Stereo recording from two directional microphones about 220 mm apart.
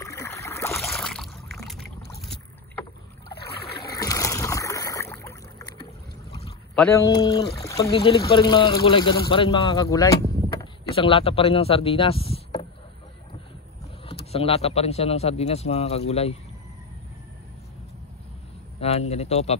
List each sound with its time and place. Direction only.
0.0 s boat: 10° left (ahead or behind)
0.7 s a sound: centre (ahead or behind)
2.2 s boat: 10° left (ahead or behind)
3.9 s boat: 15° left (ahead or behind)
6.7 s a man's voice: 10° left (ahead or behind)
10.6 s speech: 25° left (ahead or behind)
14.0 s a man's voice: 25° left (ahead or behind)
18.8 s a man's voice: 30° left (ahead or behind)